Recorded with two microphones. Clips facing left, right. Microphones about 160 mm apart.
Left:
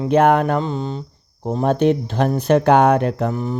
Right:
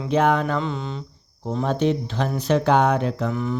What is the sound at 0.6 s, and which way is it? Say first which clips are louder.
Mantra: left 4 dB; 35° left (ahead or behind).